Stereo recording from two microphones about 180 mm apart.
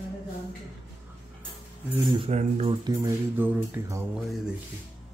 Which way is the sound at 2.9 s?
20° right (ahead or behind).